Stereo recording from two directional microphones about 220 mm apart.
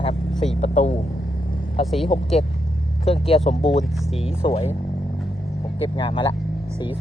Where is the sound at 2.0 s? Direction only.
25° left (ahead or behind).